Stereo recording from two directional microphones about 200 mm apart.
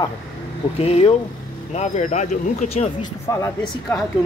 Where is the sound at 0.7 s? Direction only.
30° left (ahead or behind).